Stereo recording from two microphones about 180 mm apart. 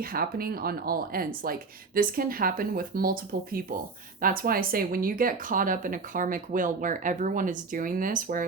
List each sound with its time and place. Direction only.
0.0 s speech: 55° right (ahead or behind)